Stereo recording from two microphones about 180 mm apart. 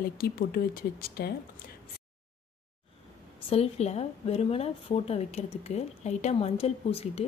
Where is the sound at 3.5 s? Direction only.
35° left (ahead or behind).